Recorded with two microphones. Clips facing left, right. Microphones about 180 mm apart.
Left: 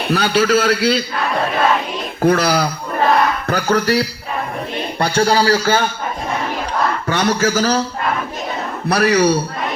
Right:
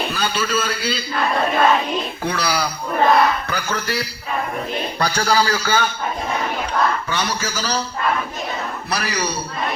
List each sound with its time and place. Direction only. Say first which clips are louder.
0.1 s a man's voice: left 8 dB; 70° left (ahead or behind)
2.2 s a man's voice: left 10 dB; 50° left (ahead or behind)
4.9 s a man's voice: left 4 dB; 25° left (ahead or behind)
7.1 s a man's voice: left 8 dB; 50° left (ahead or behind)
8.9 s a man's voice: left 12 dB; 60° left (ahead or behind)